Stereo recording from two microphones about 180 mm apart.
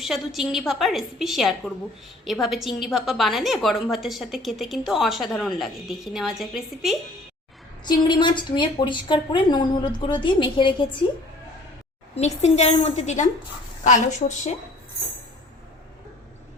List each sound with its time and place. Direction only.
0.0 s a woman's voice: centre (ahead or behind)
7.9 s a woman's voice: 25° left (ahead or behind)
12.1 s a woman's voice: 40° left (ahead or behind)